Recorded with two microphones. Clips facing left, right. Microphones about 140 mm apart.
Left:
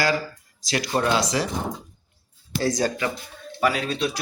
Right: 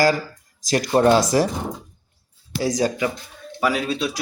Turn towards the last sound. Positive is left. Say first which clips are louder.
# right 1 dB
turn(degrees=-5)  # may be behind; listen again after turning